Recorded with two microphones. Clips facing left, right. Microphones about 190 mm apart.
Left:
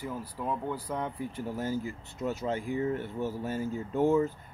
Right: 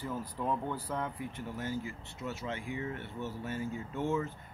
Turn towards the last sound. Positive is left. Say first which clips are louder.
# left 8 dB
turn(degrees=35)  # may be behind; listen again after turning